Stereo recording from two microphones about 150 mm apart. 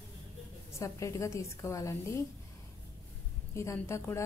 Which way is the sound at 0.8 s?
20° left (ahead or behind).